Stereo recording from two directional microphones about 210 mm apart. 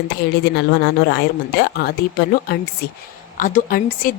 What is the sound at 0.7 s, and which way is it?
A woman's voice, 50° left (ahead or behind).